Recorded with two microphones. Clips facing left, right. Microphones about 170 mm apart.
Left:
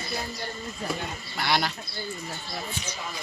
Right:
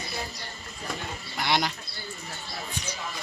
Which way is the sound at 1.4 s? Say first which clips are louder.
Even; 20° right (ahead or behind).